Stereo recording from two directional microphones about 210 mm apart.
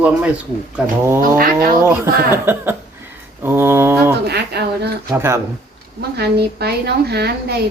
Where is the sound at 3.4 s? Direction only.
10° right (ahead or behind).